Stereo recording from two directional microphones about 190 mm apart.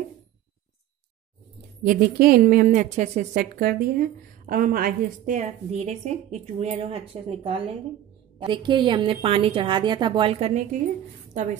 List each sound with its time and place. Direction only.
1.8 s a woman's voice: 50° right (ahead or behind); by 10.6 s 35° right (ahead or behind)